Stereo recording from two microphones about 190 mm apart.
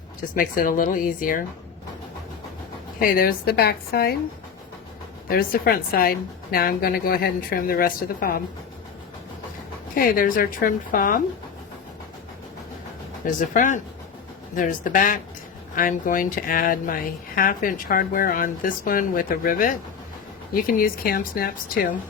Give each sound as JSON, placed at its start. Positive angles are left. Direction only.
{"t": 0.2, "sound": "speech", "side_deg": 50}
{"t": 3.0, "sound": "speech", "side_deg": 50}
{"t": 5.3, "sound": "speech", "side_deg": 50}
{"t": 9.9, "sound": "speech", "side_deg": 50}
{"t": 13.2, "sound": "speech", "side_deg": 45}